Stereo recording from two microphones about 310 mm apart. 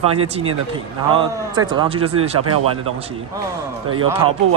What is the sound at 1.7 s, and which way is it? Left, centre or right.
Speech, centre.